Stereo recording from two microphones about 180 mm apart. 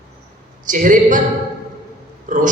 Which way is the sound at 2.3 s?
45° right (ahead or behind).